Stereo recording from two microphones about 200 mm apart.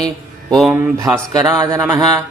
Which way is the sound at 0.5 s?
Centre (ahead or behind).